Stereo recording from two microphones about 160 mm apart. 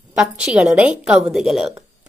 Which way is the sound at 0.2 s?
5° right (ahead or behind).